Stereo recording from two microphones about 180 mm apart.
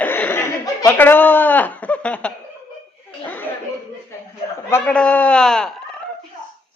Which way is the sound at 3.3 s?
10° left (ahead or behind).